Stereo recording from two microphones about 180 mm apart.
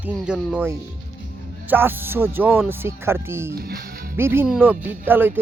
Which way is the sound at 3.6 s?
55° right (ahead or behind).